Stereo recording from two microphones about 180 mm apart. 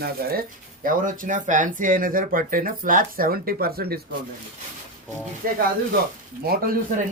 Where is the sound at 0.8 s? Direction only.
50° right (ahead or behind).